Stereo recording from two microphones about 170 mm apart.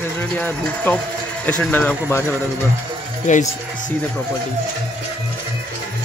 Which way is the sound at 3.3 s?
45° left (ahead or behind).